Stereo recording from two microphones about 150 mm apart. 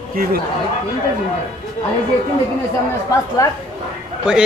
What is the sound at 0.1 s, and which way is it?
Speech, 80° right.